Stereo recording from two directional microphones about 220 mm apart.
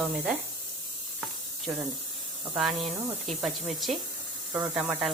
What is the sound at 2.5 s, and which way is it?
Speech, 5° right (ahead or behind).